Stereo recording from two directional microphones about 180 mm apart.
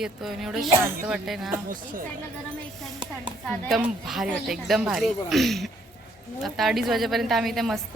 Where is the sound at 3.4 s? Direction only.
Centre (ahead or behind).